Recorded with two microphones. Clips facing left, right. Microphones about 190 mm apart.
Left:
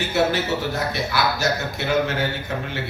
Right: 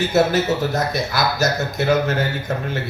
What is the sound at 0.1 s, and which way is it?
A man's voice, 40° right (ahead or behind).